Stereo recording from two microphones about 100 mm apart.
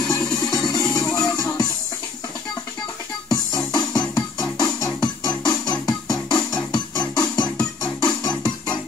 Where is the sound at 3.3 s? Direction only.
40° left (ahead or behind).